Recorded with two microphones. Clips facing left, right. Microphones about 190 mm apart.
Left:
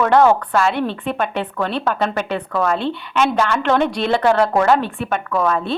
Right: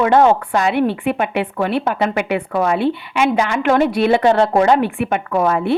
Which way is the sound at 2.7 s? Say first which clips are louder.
Right 2 dB; 5° right (ahead or behind).